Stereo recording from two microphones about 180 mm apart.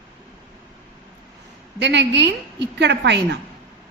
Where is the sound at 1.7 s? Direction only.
75° right (ahead or behind).